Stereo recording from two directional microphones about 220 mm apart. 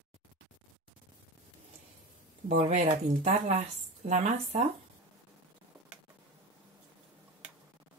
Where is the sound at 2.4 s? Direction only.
30° right (ahead or behind).